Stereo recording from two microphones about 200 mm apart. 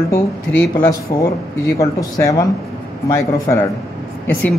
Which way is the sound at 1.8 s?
15° left (ahead or behind).